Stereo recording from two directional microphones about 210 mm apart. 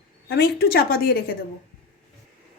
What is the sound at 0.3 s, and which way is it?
Speech, 45° left (ahead or behind).